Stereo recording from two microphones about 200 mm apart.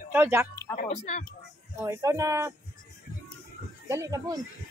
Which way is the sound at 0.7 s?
35° left (ahead or behind).